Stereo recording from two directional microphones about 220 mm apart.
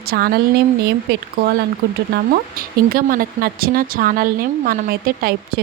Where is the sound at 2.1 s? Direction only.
40° right (ahead or behind).